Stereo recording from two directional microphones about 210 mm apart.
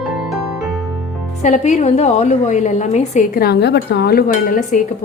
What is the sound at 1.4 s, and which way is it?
A woman's voice, 35° left (ahead or behind).